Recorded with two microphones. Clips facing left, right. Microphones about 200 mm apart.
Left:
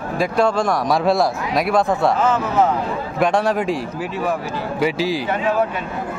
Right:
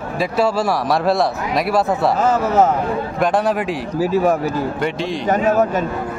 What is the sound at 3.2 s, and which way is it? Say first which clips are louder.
Speech: left 1 dB; centre (ahead or behind).